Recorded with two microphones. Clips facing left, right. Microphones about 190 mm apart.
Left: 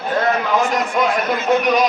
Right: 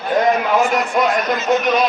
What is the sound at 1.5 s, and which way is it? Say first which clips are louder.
Speech: left 1 dB; 10° left (ahead or behind).